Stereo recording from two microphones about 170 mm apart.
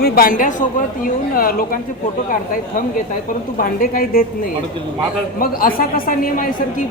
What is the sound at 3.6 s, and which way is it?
Speech, 55° left (ahead or behind).